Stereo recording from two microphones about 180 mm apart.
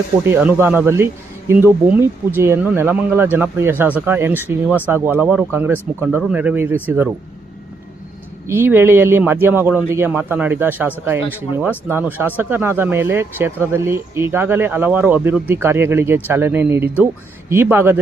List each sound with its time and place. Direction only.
0.3 s speech: 10° right (ahead or behind)
8.4 s speech: 10° right (ahead or behind)